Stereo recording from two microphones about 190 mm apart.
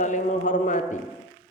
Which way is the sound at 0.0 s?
40° left (ahead or behind).